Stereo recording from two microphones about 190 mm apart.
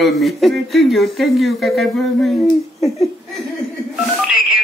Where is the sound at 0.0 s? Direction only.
Centre (ahead or behind).